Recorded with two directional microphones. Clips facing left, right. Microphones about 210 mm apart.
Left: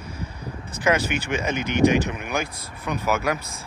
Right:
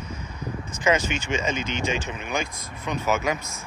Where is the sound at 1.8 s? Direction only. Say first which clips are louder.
Left 11 dB; 35° left (ahead or behind).